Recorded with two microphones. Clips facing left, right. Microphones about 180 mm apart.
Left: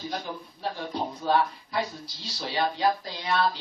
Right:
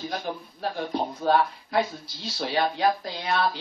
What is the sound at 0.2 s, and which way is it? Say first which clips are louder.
Speech: right 3 dB; 55° right (ahead or behind).